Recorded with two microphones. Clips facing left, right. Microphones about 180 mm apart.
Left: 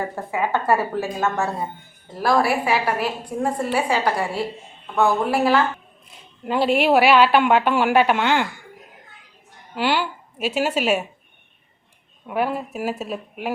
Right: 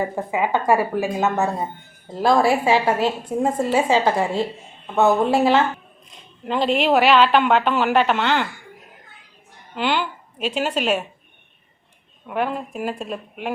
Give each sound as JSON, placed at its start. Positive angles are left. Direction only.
{"t": 0.0, "sound": "a woman's voice", "side_deg": -15}
{"t": 6.1, "sound": "a woman's voice", "side_deg": 5}
{"t": 9.7, "sound": "a woman's voice", "side_deg": 10}
{"t": 12.3, "sound": "a woman's voice", "side_deg": 5}